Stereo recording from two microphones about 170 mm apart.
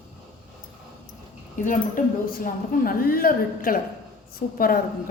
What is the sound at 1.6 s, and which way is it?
A woman's voice, 50° left (ahead or behind).